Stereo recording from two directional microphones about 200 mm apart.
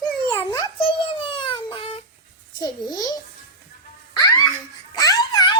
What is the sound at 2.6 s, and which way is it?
Speech, 20° left (ahead or behind).